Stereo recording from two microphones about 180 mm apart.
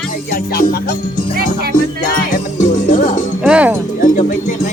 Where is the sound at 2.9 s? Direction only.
45° left (ahead or behind).